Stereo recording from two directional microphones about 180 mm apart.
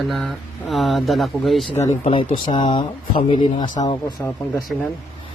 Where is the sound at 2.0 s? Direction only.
30° left (ahead or behind).